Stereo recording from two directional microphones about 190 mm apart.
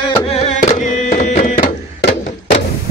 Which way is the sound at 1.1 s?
35° left (ahead or behind).